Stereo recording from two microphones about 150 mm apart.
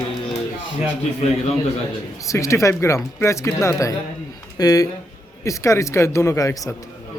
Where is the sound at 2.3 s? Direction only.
20° left (ahead or behind).